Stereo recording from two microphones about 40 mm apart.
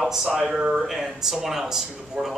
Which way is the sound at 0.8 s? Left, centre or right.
Centre.